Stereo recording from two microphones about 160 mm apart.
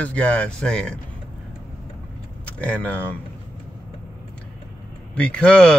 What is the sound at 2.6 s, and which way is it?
Speech, 10° left (ahead or behind).